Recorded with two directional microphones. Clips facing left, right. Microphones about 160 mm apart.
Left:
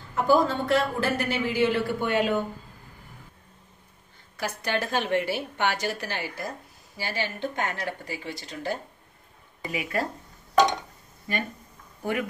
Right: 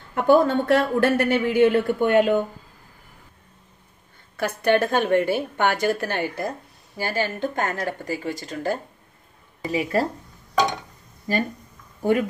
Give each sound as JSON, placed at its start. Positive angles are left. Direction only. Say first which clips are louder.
{"t": 0.1, "sound": "speech", "louder": "right 5 dB", "side_deg": -60}
{"t": 4.4, "sound": "a woman's voice", "louder": "right 9 dB", "side_deg": -55}
{"t": 9.7, "sound": "speech", "louder": "right 7 dB", "side_deg": -35}
{"t": 11.3, "sound": "speech", "louder": "right 7 dB", "side_deg": -35}